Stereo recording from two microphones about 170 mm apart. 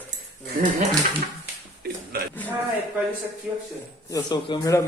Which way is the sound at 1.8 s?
65° right (ahead or behind).